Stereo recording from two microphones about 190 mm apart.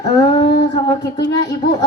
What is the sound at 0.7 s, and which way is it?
Speech, 20° left (ahead or behind).